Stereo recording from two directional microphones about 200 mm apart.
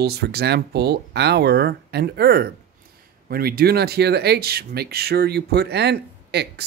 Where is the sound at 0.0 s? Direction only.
55° right (ahead or behind).